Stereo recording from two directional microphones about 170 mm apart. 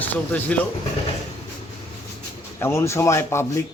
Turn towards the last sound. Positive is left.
turn(degrees=15)  # may be behind; listen again after turning